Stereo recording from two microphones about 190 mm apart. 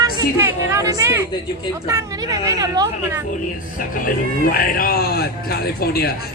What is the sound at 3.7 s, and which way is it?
A man's voice, 45° left (ahead or behind).